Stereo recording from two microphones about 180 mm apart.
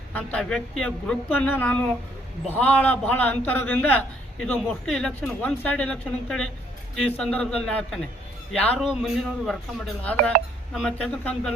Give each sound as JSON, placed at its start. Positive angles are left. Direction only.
{"t": 0.1, "sound": "a man's voice", "side_deg": 10}